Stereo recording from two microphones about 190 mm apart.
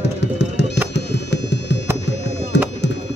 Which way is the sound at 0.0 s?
65° left (ahead or behind).